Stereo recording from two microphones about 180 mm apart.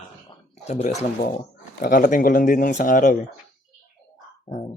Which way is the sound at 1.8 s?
50° left (ahead or behind).